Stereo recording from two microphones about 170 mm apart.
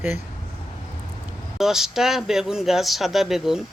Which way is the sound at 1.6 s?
Centre (ahead or behind).